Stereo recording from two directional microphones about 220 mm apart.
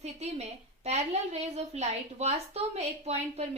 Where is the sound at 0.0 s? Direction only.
30° right (ahead or behind).